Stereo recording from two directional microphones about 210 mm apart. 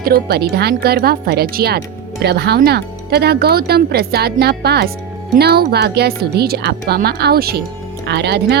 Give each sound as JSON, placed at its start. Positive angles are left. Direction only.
{"t": 0.0, "sound": "speech", "side_deg": -50}